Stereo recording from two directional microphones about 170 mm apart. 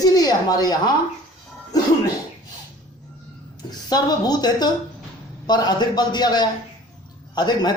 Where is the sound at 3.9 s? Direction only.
25° left (ahead or behind).